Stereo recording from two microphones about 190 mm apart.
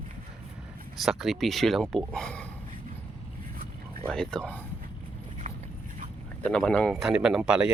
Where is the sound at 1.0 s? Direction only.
Centre (ahead or behind).